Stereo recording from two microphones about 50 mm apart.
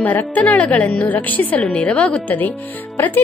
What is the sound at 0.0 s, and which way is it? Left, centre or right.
A woman's voice, left.